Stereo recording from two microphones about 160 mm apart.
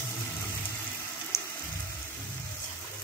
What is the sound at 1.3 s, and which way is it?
Water, 20° left (ahead or behind).